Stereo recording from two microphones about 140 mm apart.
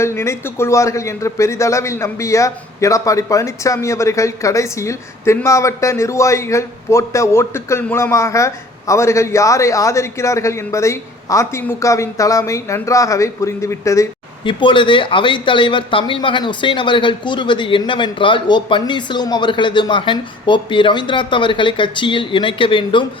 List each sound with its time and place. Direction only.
0.0 s a man's voice: 20° left (ahead or behind)
14.4 s speech: 35° left (ahead or behind)